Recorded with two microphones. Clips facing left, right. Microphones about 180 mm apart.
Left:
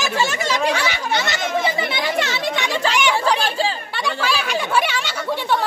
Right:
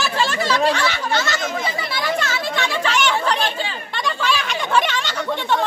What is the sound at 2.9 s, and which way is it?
Chatter, 10° left (ahead or behind).